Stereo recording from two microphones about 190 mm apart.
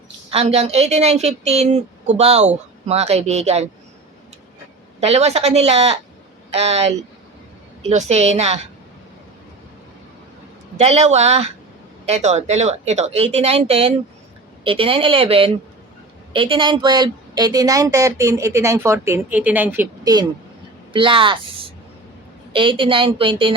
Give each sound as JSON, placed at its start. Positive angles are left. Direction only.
{"t": 0.3, "sound": "speech", "side_deg": -30}
{"t": 4.9, "sound": "speech", "side_deg": -35}
{"t": 10.8, "sound": "a woman's voice", "side_deg": -35}
{"t": 20.9, "sound": "a woman's voice", "side_deg": -25}
{"t": 22.5, "sound": "a woman's voice", "side_deg": -25}